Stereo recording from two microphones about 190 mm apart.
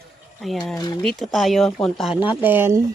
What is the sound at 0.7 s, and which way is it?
Speech, 20° left (ahead or behind).